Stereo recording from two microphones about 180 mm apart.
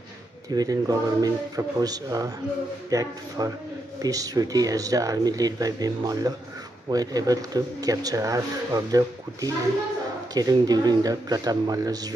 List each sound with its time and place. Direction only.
0.5 s speech: 20° right (ahead or behind)